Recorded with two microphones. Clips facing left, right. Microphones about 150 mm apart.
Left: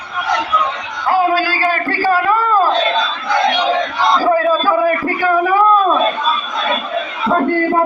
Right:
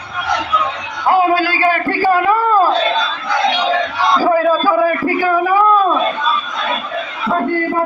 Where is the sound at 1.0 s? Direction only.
15° right (ahead or behind).